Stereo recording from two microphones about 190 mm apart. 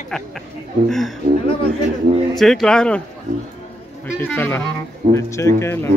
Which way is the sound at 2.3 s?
Centre (ahead or behind).